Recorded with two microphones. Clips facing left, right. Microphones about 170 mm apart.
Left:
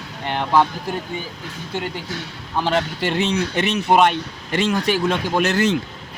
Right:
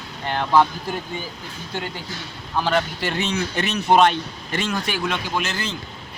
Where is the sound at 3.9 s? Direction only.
10° left (ahead or behind).